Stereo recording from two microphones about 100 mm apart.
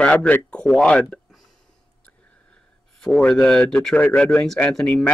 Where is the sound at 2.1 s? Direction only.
10° left (ahead or behind).